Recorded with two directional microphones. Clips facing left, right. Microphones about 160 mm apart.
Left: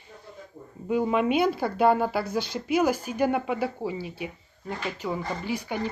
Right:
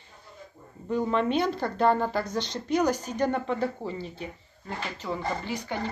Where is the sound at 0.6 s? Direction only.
65° left (ahead or behind).